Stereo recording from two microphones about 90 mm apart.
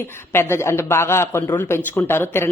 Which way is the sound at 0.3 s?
30° left (ahead or behind).